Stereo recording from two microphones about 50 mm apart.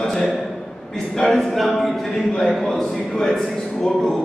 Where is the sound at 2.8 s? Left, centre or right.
Centre.